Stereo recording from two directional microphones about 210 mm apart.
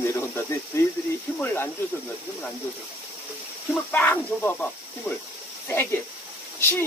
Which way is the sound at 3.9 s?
10° left (ahead or behind).